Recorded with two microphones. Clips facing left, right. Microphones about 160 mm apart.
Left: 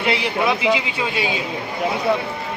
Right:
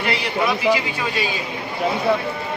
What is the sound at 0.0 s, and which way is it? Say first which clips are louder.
A man's voice: left 2 dB; 20° left (ahead or behind).